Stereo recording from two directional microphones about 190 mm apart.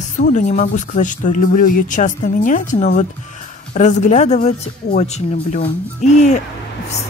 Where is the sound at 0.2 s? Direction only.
40° left (ahead or behind).